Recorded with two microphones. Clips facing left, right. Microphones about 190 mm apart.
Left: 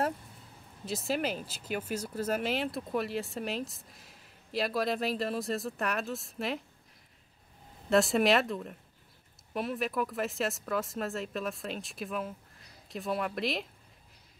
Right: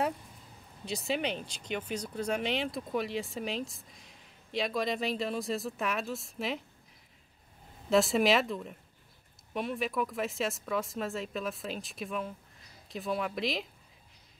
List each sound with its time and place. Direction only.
0.8 s speech: centre (ahead or behind)
7.9 s speech: centre (ahead or behind)